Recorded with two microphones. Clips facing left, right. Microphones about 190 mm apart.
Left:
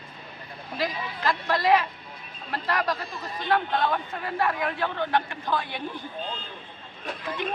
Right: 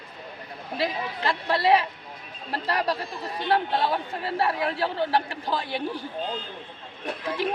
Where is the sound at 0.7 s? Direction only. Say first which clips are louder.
Right 2 dB; 30° right (ahead or behind).